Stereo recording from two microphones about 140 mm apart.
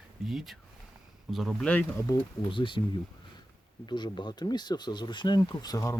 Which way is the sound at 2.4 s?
35° left (ahead or behind).